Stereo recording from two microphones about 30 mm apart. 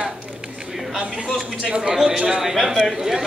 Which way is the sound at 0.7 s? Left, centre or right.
Centre.